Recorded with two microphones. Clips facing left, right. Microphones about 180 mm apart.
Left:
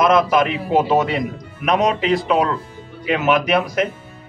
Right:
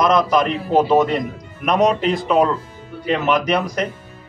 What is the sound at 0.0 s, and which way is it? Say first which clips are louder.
A man's voice: left 1 dB; 5° left (ahead or behind).